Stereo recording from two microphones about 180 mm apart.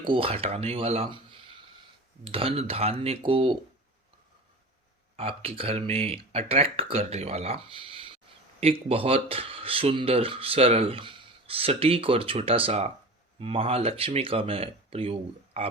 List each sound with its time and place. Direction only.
0.0 s speech: 30° right (ahead or behind)
5.1 s speech: 30° right (ahead or behind)